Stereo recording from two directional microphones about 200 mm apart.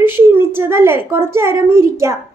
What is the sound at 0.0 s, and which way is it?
A woman's voice, 10° right (ahead or behind).